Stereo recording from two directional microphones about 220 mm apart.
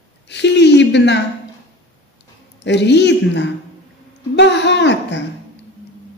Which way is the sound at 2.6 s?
50° left (ahead or behind).